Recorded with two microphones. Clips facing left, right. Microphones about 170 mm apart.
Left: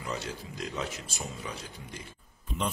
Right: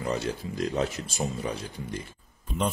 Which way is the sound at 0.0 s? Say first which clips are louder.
Right 7 dB; 50° right (ahead or behind).